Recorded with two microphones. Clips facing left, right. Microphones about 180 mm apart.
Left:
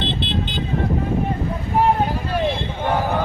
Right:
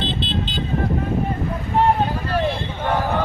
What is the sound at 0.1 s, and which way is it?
Vehicle, 60° left (ahead or behind).